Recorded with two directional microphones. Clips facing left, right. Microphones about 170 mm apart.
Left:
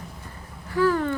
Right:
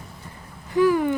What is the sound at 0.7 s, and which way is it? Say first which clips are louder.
Speech: right 3 dB; 15° right (ahead or behind).